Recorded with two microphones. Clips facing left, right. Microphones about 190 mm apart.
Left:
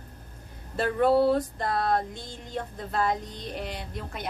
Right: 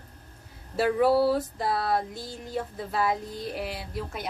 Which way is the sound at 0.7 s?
5° right (ahead or behind).